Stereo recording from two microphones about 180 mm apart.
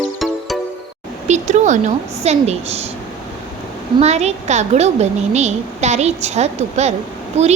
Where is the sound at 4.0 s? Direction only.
35° right (ahead or behind).